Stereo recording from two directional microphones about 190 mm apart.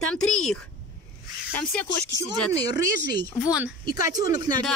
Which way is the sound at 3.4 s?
5° right (ahead or behind).